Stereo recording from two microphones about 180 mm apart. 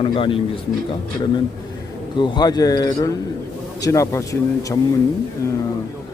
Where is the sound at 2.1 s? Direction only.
25° left (ahead or behind).